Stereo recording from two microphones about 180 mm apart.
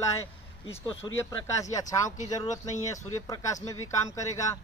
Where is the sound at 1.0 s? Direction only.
20° left (ahead or behind).